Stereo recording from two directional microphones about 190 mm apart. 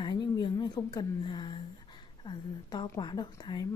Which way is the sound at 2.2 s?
20° left (ahead or behind).